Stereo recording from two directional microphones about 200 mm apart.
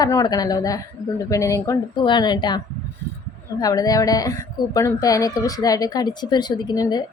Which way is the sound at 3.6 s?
20° left (ahead or behind).